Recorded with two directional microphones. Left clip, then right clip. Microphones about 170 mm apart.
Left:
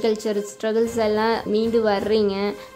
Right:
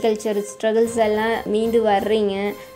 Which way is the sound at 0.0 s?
10° left (ahead or behind).